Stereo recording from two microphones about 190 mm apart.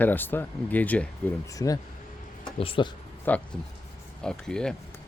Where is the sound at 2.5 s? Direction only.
30° left (ahead or behind).